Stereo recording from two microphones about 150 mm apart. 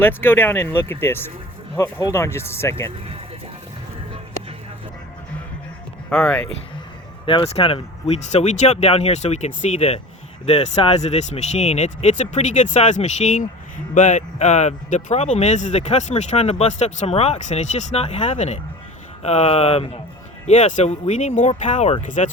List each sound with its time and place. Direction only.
0.0 s speech: 15° left (ahead or behind)
6.1 s speech: 5° left (ahead or behind)
7.3 s speech: 40° left (ahead or behind); by 22.3 s 55° left (ahead or behind)